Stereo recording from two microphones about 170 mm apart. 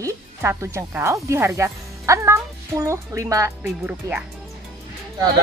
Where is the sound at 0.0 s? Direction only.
15° right (ahead or behind).